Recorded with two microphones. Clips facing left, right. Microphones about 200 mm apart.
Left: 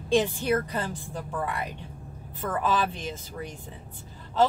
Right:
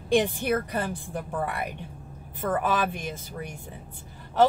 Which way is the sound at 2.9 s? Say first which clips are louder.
Right 1 dB; 15° right (ahead or behind).